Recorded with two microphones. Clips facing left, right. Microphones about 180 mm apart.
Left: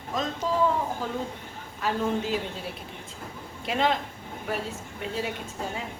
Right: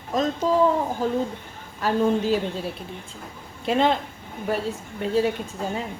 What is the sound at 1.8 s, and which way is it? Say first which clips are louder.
Speech: right 6 dB; 40° right (ahead or behind).